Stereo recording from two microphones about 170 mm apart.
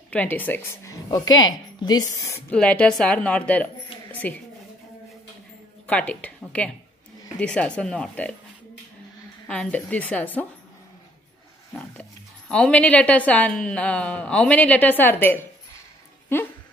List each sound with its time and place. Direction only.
0.1 s speech: 10° left (ahead or behind)
2.5 s a woman's voice: 5° left (ahead or behind)
5.9 s speech: 10° left (ahead or behind)
9.5 s speech: 10° left (ahead or behind)
11.7 s speech: 5° left (ahead or behind)